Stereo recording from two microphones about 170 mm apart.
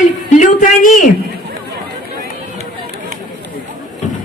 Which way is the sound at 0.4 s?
50° left (ahead or behind).